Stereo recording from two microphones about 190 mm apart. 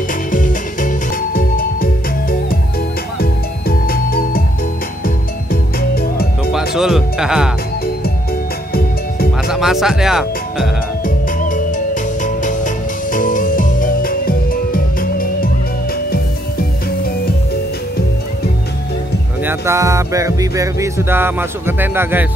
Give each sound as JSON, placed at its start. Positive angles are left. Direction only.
{"t": 0.3, "sound": "music", "side_deg": 45}
{"t": 3.2, "sound": "music", "side_deg": 50}
{"t": 6.5, "sound": "music", "side_deg": 0}
{"t": 9.5, "sound": "speech", "side_deg": 0}
{"t": 11.1, "sound": "music", "side_deg": 45}
{"t": 19.4, "sound": "music", "side_deg": -15}